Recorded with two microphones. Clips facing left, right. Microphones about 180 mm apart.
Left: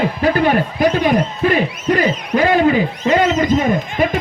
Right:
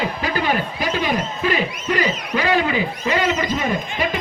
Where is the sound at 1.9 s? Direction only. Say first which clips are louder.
Left 5 dB; 45° left (ahead or behind).